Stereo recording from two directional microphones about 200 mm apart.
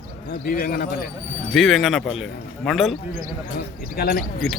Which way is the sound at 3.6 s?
50° left (ahead or behind).